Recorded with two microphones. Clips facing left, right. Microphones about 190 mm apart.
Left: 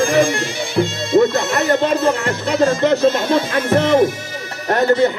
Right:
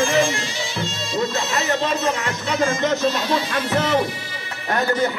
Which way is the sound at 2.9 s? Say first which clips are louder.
Left 6 dB; 55° left (ahead or behind).